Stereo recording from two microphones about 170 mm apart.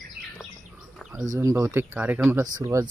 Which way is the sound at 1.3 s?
20° right (ahead or behind).